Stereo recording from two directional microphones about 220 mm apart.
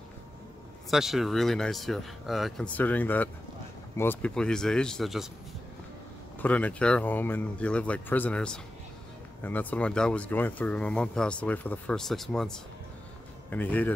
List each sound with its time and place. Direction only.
0.8 s speech: centre (ahead or behind)
6.4 s speech: 5° left (ahead or behind)